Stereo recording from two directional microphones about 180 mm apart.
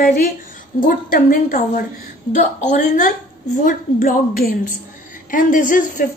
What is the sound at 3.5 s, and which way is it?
A woman's voice, 45° left (ahead or behind).